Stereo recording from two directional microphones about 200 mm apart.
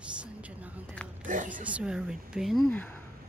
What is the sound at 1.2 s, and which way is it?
Speech, 40° right (ahead or behind).